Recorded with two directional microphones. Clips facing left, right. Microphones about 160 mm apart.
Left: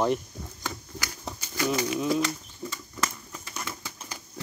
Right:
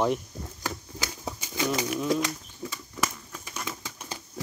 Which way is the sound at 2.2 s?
15° right (ahead or behind).